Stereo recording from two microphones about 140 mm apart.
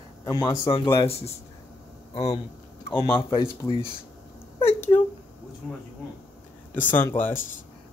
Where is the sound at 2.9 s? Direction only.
35° left (ahead or behind).